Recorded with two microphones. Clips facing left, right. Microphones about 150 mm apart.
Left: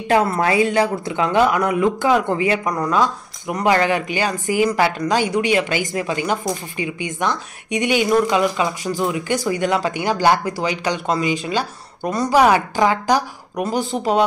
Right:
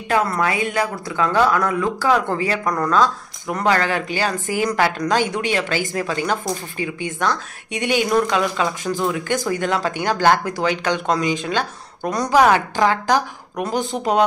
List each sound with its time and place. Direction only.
0.1 s speech: 25° left (ahead or behind); by 14.2 s 5° left (ahead or behind)